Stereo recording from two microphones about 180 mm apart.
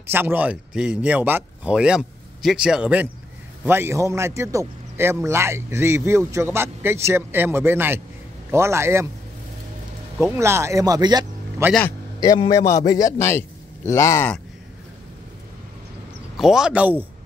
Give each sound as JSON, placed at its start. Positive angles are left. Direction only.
{"t": 0.1, "sound": "a man's voice", "side_deg": -10}
{"t": 10.3, "sound": "a man's voice", "side_deg": -15}
{"t": 12.2, "sound": "a man's voice", "side_deg": 20}
{"t": 16.3, "sound": "speech", "side_deg": -5}